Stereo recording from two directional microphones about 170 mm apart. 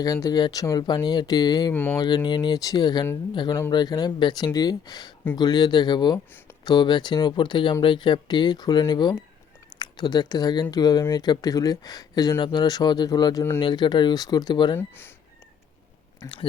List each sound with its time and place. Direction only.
0.0 s speech: 20° left (ahead or behind)
1.7 s speech: 10° left (ahead or behind)
2.0 s speech: 25° left (ahead or behind)
14.8 s speech: 15° left (ahead or behind)
16.2 s speech: 20° left (ahead or behind)